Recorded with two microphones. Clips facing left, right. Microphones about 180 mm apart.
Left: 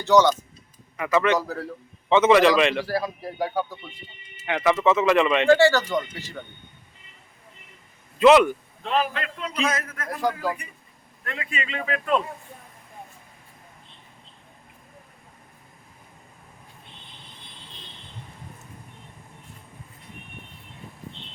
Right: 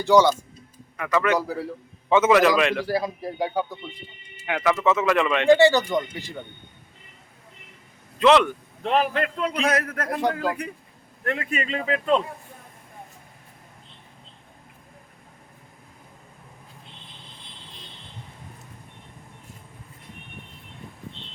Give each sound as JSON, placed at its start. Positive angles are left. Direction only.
{"t": 0.0, "sound": "speech", "side_deg": -10}
{"t": 0.9, "sound": "speech", "side_deg": 5}
{"t": 1.3, "sound": "speech", "side_deg": -10}
{"t": 2.8, "sound": "speech", "side_deg": -20}
{"t": 4.4, "sound": "speech", "side_deg": -5}
{"t": 5.5, "sound": "speech", "side_deg": -15}
{"t": 8.2, "sound": "speech", "side_deg": 5}
{"t": 8.8, "sound": "a man's voice", "side_deg": -55}
{"t": 11.3, "sound": "a man's voice", "side_deg": -50}